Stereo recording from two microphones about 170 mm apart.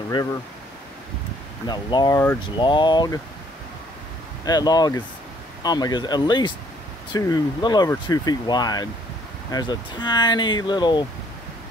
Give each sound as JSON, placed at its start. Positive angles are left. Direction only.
{"t": 1.7, "sound": "speech", "side_deg": 25}
{"t": 4.5, "sound": "speech", "side_deg": 25}